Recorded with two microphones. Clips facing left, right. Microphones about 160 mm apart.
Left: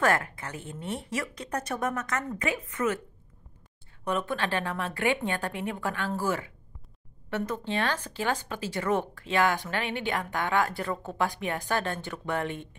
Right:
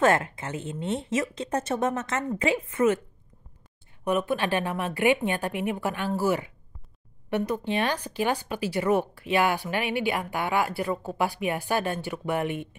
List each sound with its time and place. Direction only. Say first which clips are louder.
0.0 s speech: right 4 dB; 25° right (ahead or behind)
4.0 s speech: right 4 dB; 10° right (ahead or behind)